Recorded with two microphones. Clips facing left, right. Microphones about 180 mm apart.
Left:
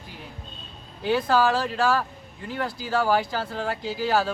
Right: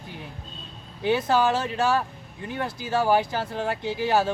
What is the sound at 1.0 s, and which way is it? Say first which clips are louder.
Speech: even; 20° right (ahead or behind).